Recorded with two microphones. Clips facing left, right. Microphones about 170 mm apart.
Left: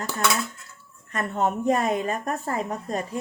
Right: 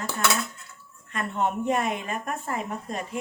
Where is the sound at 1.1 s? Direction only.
40° left (ahead or behind).